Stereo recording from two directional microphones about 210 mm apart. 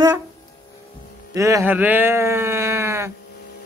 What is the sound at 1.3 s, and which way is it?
Speech, 15° right (ahead or behind).